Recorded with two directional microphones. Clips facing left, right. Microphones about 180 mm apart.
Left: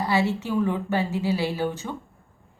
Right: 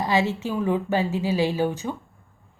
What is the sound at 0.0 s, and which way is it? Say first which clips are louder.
A woman's voice: right 1 dB; 15° right (ahead or behind).